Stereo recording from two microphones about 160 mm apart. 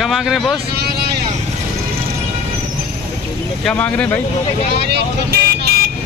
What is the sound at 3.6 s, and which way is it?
Speech, 10° left (ahead or behind).